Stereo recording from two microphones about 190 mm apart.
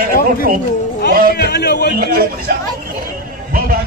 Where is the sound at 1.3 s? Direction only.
60° left (ahead or behind).